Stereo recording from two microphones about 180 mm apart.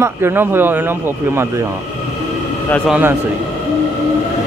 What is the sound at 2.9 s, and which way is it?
Speech, 10° right (ahead or behind).